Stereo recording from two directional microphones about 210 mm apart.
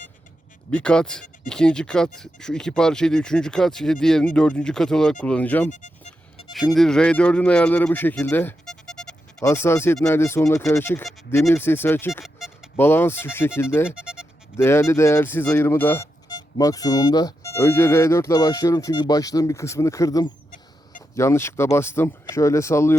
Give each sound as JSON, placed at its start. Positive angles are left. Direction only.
{"t": 0.7, "sound": "speech", "side_deg": 5}
{"t": 5.6, "sound": "speech", "side_deg": 35}
{"t": 6.5, "sound": "speech", "side_deg": 0}
{"t": 12.2, "sound": "a sound", "side_deg": 0}
{"t": 12.7, "sound": "speech", "side_deg": 10}
{"t": 13.9, "sound": "music", "side_deg": -5}
{"t": 14.5, "sound": "speech", "side_deg": 10}